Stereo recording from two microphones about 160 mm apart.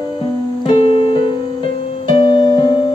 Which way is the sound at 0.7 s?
35° left (ahead or behind).